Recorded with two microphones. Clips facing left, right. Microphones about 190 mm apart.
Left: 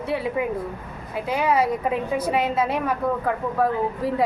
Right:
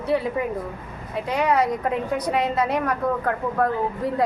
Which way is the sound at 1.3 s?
5° left (ahead or behind).